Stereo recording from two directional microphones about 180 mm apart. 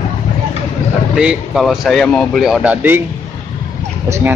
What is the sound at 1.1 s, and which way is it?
Speech, 5° right (ahead or behind).